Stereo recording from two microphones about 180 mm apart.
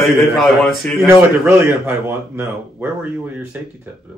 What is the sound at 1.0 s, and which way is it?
A man's voice, 15° right (ahead or behind).